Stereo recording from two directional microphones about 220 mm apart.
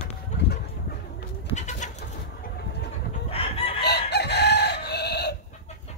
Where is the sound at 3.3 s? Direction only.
25° left (ahead or behind).